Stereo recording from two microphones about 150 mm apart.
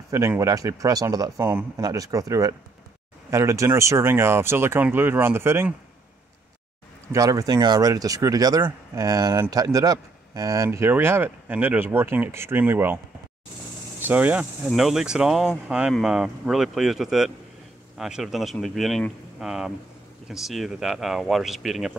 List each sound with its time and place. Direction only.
0.1 s speech: 20° right (ahead or behind)
7.1 s speech: 25° right (ahead or behind)
14.0 s speech: 10° right (ahead or behind)